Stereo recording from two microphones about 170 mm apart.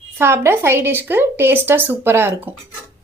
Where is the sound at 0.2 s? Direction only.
15° right (ahead or behind).